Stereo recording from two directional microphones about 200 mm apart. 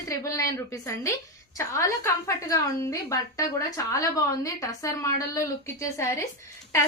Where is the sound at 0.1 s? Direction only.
15° left (ahead or behind).